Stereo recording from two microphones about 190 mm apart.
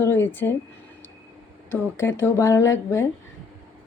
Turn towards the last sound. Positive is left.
turn(degrees=15)  # may be behind; listen again after turning